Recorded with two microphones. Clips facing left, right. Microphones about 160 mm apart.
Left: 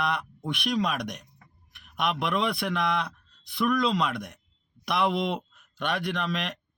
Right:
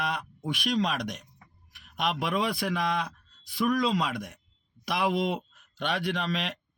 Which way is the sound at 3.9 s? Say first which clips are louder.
Left 1 dB; 65° left (ahead or behind).